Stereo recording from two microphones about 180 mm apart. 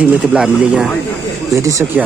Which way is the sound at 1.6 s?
15° right (ahead or behind).